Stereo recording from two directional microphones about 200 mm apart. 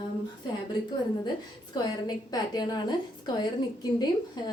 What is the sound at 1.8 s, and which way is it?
A woman's voice, 20° left (ahead or behind).